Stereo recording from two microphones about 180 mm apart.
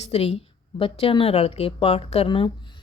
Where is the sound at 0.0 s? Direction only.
35° left (ahead or behind).